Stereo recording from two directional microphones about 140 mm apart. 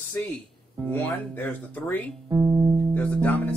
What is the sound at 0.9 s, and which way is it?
Speech, 10° left (ahead or behind).